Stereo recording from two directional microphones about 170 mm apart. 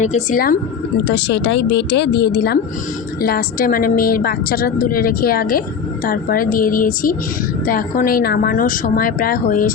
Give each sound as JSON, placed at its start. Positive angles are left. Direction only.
{"t": 0.0, "sound": "speech", "side_deg": 45}
{"t": 1.0, "sound": "speech", "side_deg": 90}